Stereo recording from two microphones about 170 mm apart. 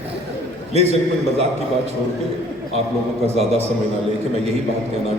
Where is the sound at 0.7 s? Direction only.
40° right (ahead or behind).